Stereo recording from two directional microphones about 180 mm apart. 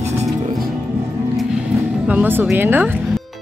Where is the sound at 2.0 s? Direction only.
10° right (ahead or behind).